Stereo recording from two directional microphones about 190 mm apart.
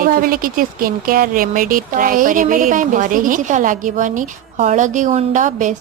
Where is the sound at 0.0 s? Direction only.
50° right (ahead or behind).